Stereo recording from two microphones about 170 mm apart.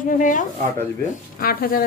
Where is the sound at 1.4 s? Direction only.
60° left (ahead or behind).